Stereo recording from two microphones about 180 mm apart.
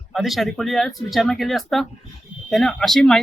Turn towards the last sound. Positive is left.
turn(degrees=0)  # may be behind; listen again after turning